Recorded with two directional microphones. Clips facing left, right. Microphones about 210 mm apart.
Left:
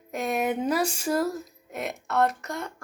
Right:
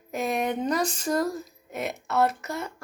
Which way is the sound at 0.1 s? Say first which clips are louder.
Even; centre (ahead or behind).